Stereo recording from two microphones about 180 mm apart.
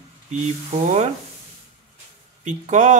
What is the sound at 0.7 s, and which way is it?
Speech, 40° right (ahead or behind).